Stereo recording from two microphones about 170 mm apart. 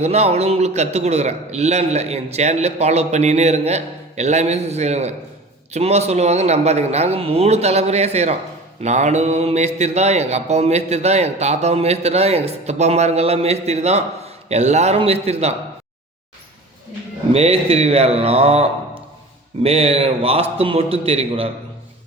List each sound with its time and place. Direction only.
0.0 s mantra: 40° right (ahead or behind)
17.3 s mantra: 35° right (ahead or behind)